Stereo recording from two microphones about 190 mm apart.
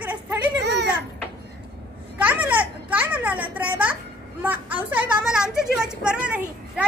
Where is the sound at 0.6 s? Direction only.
60° right (ahead or behind).